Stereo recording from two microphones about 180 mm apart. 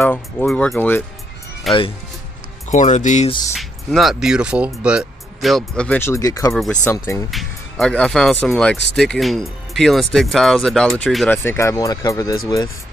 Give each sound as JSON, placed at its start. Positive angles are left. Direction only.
{"t": 0.0, "sound": "speech", "side_deg": 10}
{"t": 2.7, "sound": "speech", "side_deg": 45}
{"t": 3.5, "sound": "speech", "side_deg": 0}
{"t": 6.5, "sound": "speech", "side_deg": 5}
{"t": 7.2, "sound": "speech", "side_deg": 0}
{"t": 11.2, "sound": "speech", "side_deg": 15}